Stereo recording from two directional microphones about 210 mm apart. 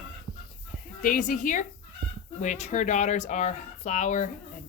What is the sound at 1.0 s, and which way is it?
Speech, 40° left (ahead or behind).